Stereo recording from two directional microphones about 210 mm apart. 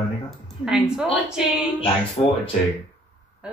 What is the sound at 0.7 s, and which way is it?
Speech, 5° right (ahead or behind).